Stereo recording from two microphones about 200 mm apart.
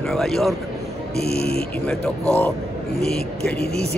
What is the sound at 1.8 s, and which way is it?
A man's voice, 5° left (ahead or behind).